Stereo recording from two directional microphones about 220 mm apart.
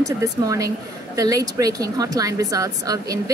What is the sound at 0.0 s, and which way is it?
Speech, 15° right (ahead or behind).